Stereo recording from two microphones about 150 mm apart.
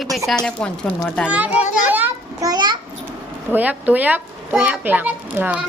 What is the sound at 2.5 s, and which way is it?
Speech, 30° right (ahead or behind).